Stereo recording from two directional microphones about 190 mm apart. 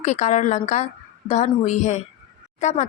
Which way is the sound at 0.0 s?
40° left (ahead or behind).